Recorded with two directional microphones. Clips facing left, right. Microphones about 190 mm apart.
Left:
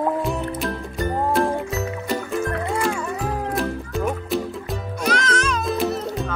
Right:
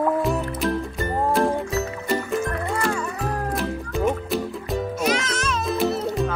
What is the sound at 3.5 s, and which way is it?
Music, centre (ahead or behind).